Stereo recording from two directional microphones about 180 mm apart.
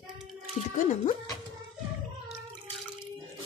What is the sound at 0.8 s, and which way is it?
Speech, 45° left (ahead or behind).